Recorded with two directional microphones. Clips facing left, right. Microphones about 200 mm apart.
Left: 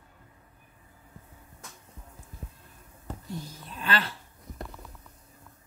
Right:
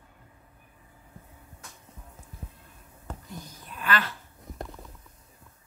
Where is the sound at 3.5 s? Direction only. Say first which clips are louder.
Right 2 dB; 30° left (ahead or behind).